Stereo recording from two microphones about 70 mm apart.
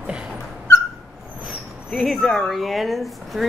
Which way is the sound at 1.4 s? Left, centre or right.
Centre.